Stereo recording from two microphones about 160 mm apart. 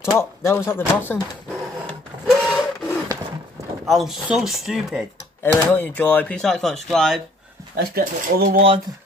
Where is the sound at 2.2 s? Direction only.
5° left (ahead or behind).